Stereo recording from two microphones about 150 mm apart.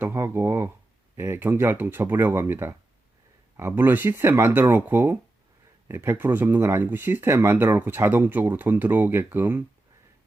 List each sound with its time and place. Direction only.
0.0 s speech: 15° right (ahead or behind)